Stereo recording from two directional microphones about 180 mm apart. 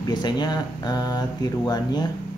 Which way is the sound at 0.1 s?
25° left (ahead or behind).